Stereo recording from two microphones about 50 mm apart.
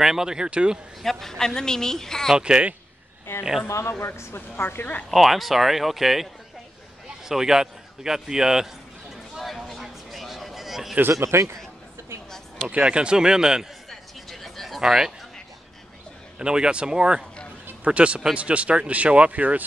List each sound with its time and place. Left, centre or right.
0.0 s a man's voice: centre
1.0 s a woman's voice: centre
2.3 s a man's voice: centre
3.3 s a man's voice: left
3.6 s a woman's voice: left
5.1 s speech: centre
7.2 s a man's voice: centre
9.1 s a sound: centre
11.1 s speech: right
12.5 s a man's voice: right
13.8 s a sound: centre
14.8 s a man's voice: centre
16.3 s a man's voice: centre